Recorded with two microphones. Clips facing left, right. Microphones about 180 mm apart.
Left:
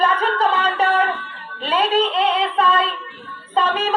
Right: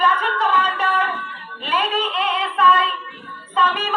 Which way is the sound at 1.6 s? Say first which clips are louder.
Left 5 dB; 30° left (ahead or behind).